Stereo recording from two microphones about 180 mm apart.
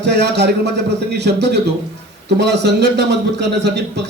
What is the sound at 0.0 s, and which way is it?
A man's voice, 70° right (ahead or behind).